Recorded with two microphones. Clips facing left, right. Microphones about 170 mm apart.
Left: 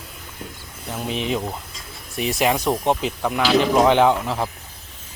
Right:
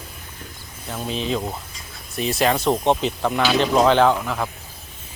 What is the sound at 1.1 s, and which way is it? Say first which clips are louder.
Speech: even; 20° left (ahead or behind).